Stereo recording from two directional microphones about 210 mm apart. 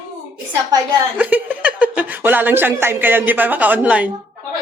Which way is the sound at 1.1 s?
5° right (ahead or behind).